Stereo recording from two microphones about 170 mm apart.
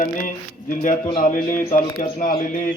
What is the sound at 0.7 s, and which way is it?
A man's voice, 50° left (ahead or behind).